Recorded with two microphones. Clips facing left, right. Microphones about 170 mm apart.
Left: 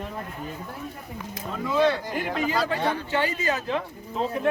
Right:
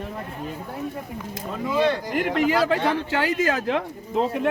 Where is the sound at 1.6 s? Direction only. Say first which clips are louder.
Even; 15° right (ahead or behind).